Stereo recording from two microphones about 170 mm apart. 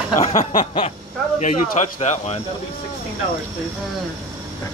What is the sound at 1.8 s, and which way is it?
Speech, 40° left (ahead or behind).